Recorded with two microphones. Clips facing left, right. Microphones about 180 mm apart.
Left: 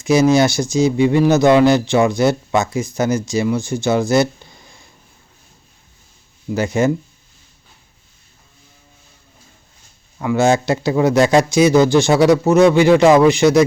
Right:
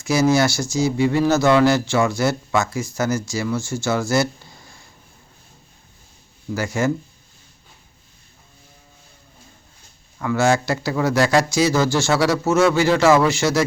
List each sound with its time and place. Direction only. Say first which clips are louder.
0.0 s speech: left 4 dB; 20° left (ahead or behind)
6.5 s speech: left 5 dB; 20° left (ahead or behind)
10.2 s speech: left 3 dB; 20° left (ahead or behind)